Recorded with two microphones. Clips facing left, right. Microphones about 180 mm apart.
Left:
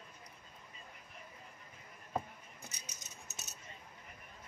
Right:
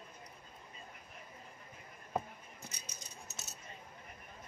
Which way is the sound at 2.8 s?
20° left (ahead or behind).